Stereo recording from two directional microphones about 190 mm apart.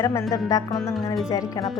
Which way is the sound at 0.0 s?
15° left (ahead or behind).